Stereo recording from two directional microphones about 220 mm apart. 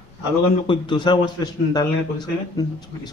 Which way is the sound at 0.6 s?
20° left (ahead or behind).